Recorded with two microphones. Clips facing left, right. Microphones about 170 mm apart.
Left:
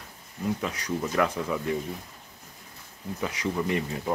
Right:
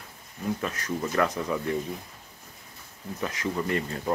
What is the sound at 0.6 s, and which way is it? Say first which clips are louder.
Speech: even; 10° left (ahead or behind).